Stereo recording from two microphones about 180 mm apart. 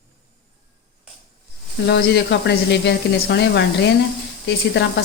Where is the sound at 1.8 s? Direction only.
70° left (ahead or behind).